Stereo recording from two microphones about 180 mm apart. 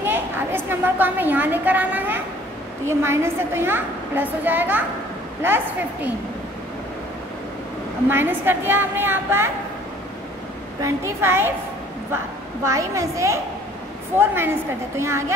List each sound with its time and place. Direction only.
0.0 s a sound: 10° right (ahead or behind)
2.9 s a woman's voice: 15° right (ahead or behind)
8.1 s a woman's voice: 10° right (ahead or behind)
10.8 s a woman's voice: 15° right (ahead or behind)
12.6 s a woman's voice: 15° right (ahead or behind)